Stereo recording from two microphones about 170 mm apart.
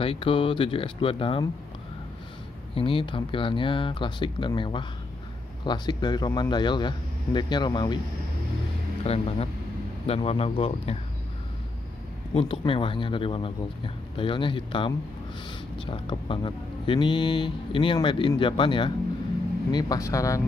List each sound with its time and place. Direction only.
0.0 s a man's voice: 30° left (ahead or behind)
2.7 s speech: 30° left (ahead or behind)
9.0 s a man's voice: 35° left (ahead or behind)
12.4 s a man's voice: 30° left (ahead or behind)